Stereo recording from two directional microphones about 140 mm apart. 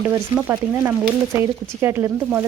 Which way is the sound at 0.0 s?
10° right (ahead or behind).